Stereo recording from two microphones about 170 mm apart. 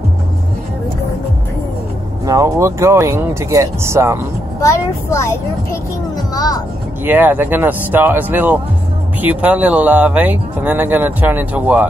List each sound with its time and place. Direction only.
2.2 s speech: 20° right (ahead or behind)
4.6 s speech: 20° left (ahead or behind)
7.1 s speech: 10° right (ahead or behind)